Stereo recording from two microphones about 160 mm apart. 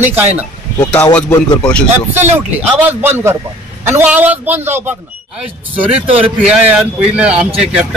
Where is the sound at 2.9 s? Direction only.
15° right (ahead or behind).